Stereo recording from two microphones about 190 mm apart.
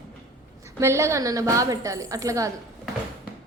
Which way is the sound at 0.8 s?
15° right (ahead or behind).